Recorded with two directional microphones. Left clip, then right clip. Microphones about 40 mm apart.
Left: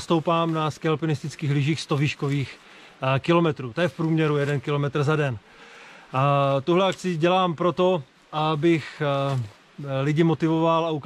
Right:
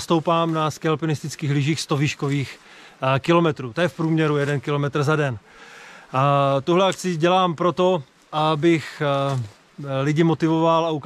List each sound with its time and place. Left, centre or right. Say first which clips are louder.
0.0 s speech: right 3 dB; right